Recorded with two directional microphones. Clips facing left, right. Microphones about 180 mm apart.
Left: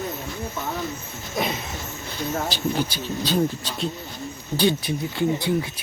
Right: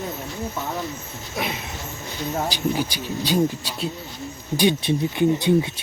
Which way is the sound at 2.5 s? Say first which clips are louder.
Right 1 dB; 15° right (ahead or behind).